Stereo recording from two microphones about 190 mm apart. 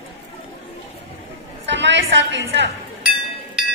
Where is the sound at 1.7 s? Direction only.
70° right (ahead or behind).